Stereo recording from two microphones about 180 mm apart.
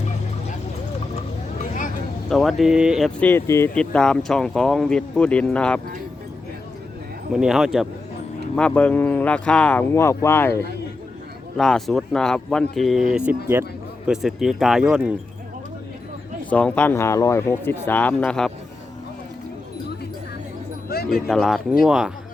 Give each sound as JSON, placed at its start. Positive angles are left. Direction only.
{"t": 2.3, "sound": "speech", "side_deg": 0}
{"t": 3.2, "sound": "speech", "side_deg": 10}
{"t": 7.3, "sound": "speech", "side_deg": 0}
{"t": 13.1, "sound": "speech", "side_deg": -10}
{"t": 16.5, "sound": "speech", "side_deg": 5}
{"t": 20.9, "sound": "a sound", "side_deg": 60}
{"t": 21.2, "sound": "speech", "side_deg": 0}